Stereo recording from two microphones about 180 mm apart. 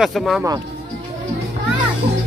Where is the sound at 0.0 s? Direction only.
Centre (ahead or behind).